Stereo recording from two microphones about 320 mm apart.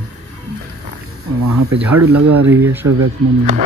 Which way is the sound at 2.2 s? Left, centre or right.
Right.